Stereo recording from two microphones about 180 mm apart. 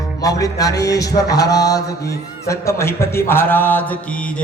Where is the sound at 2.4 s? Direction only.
15° left (ahead or behind).